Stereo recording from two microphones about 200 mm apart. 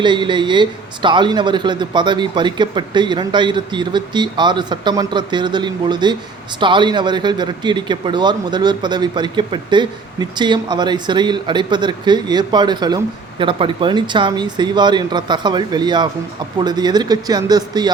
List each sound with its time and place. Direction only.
0.0 s speech: 25° right (ahead or behind)